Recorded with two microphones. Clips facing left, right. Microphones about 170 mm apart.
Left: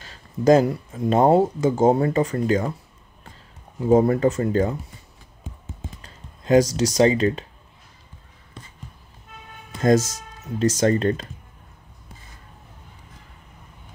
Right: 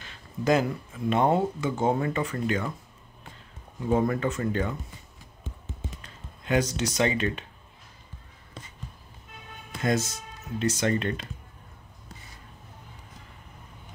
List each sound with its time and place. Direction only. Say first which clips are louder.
0.0 s speech: left 9 dB; 40° left (ahead or behind)
3.8 s speech: left 8 dB; 30° left (ahead or behind)
6.0 s speech: left 9 dB; 35° left (ahead or behind)
9.8 s speech: left 8 dB; 40° left (ahead or behind)